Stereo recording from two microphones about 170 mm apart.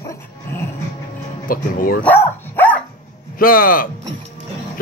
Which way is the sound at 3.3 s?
60° left (ahead or behind).